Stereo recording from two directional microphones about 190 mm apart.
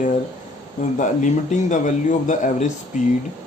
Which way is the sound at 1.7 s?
40° left (ahead or behind).